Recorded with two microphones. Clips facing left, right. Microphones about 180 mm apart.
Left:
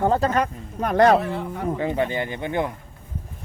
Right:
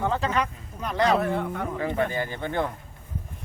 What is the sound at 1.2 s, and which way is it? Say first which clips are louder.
Speech: right 1 dB; 50° right (ahead or behind).